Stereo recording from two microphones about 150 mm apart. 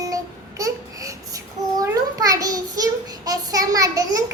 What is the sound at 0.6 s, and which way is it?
Babbling, 20° right (ahead or behind).